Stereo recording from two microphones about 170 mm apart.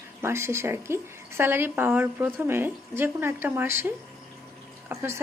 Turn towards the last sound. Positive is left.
turn(degrees=-15)  # may be behind; listen again after turning